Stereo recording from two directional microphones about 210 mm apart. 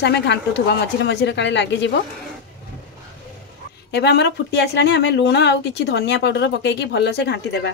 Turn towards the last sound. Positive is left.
turn(degrees=55)  # may be behind; listen again after turning